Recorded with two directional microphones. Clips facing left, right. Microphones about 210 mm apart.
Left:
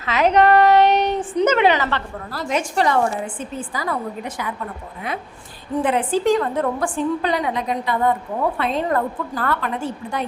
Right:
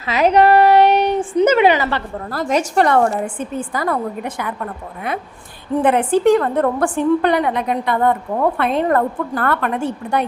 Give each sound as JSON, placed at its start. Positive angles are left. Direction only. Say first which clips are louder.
{"t": 0.2, "sound": "child singing", "louder": "right 2 dB", "side_deg": -10}
{"t": 1.5, "sound": "a sound", "louder": "right 2 dB", "side_deg": -10}
{"t": 2.3, "sound": "a woman's voice", "louder": "right 5 dB", "side_deg": -45}
{"t": 2.8, "sound": "a woman's voice", "louder": "right 4 dB", "side_deg": -55}
{"t": 5.8, "sound": "a woman's voice", "louder": "right 5 dB", "side_deg": -60}